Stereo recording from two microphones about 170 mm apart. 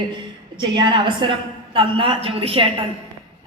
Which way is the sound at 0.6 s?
25° right (ahead or behind).